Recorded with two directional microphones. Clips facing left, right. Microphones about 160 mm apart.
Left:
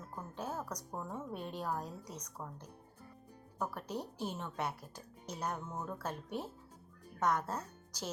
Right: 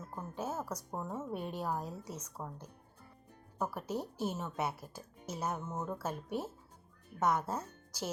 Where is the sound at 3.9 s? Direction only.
15° left (ahead or behind).